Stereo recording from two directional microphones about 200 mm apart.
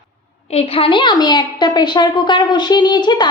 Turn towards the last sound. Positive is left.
turn(degrees=20)  # may be behind; listen again after turning